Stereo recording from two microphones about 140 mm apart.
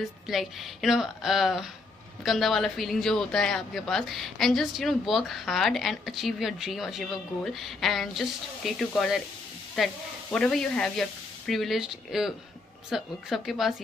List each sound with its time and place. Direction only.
0.3 s speech: centre (ahead or behind)